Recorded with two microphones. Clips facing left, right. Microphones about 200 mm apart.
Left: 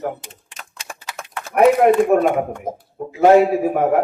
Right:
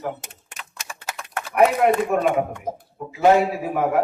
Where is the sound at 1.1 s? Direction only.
45° right (ahead or behind).